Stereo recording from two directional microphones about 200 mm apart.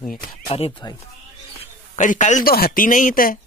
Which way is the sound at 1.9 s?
40° left (ahead or behind).